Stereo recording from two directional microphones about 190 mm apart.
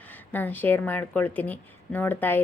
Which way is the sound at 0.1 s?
10° left (ahead or behind).